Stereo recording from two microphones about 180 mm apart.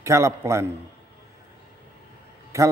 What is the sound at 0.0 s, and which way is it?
Speech, 15° right (ahead or behind).